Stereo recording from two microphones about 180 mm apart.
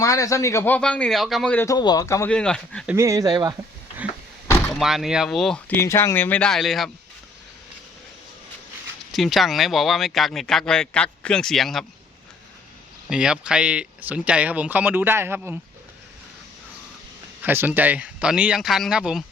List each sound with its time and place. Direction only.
0.0 s a man's voice: 20° left (ahead or behind)
1.6 s speech: 20° left (ahead or behind)
2.3 s speech: 5° left (ahead or behind)
2.8 s speech: 15° right (ahead or behind)
4.7 s speech: centre (ahead or behind)
5.7 s a man's voice: 15° left (ahead or behind)
9.1 s speech: centre (ahead or behind)
13.1 s speech: 5° right (ahead or behind)
17.4 s speech: 10° right (ahead or behind)